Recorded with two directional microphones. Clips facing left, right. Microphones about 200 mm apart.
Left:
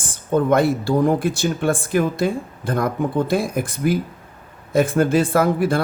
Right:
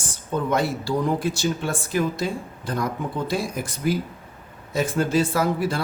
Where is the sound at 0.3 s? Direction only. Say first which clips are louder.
Left 7 dB; 55° left (ahead or behind).